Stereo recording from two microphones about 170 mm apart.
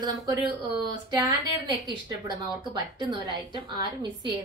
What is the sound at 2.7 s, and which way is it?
A woman's voice, 25° right (ahead or behind).